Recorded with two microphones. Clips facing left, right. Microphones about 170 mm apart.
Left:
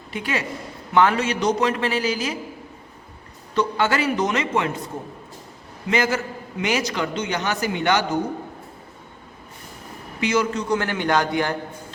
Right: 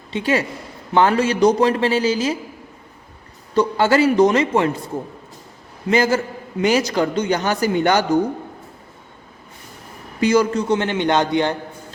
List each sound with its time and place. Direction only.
0.1 s a man's voice: 30° right (ahead or behind)
3.5 s a man's voice: 35° right (ahead or behind)
5.9 s a man's voice: 30° right (ahead or behind)
10.2 s a man's voice: 35° right (ahead or behind)
10.7 s a man's voice: 20° right (ahead or behind)